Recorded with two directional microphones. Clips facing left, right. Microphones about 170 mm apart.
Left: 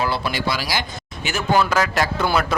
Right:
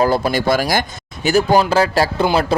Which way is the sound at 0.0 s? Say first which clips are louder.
Right 7 dB; 45° right (ahead or behind).